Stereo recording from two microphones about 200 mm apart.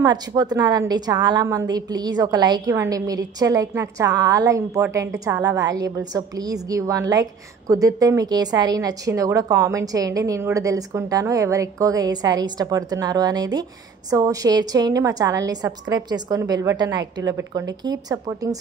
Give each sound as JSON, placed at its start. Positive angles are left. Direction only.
{"t": 0.0, "sound": "a woman's voice", "side_deg": -20}